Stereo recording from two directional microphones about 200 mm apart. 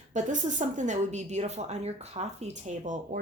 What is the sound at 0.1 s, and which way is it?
A woman's voice, 35° right (ahead or behind).